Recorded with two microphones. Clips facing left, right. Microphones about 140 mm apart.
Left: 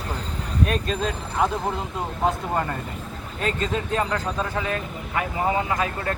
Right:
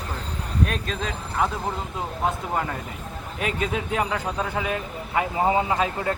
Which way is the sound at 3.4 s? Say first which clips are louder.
Left 1 dB; 10° right (ahead or behind).